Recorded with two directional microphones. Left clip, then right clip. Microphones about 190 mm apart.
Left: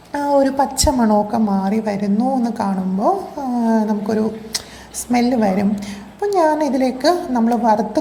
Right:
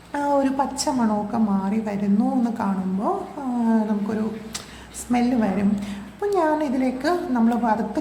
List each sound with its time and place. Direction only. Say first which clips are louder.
0.1 s a woman's voice: left 5 dB; 10° left (ahead or behind)